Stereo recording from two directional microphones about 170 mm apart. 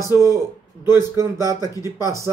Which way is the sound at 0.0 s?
15° right (ahead or behind).